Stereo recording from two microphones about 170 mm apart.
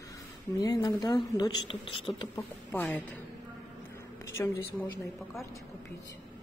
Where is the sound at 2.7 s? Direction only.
10° left (ahead or behind).